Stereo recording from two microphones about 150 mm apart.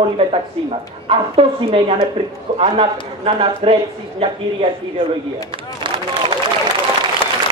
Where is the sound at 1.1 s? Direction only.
40° right (ahead or behind).